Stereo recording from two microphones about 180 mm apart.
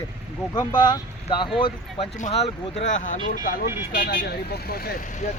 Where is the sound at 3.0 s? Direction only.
50° left (ahead or behind); by 4.8 s 65° left (ahead or behind).